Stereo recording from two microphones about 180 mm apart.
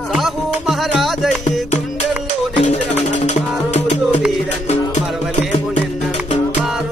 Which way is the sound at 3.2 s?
40° left (ahead or behind).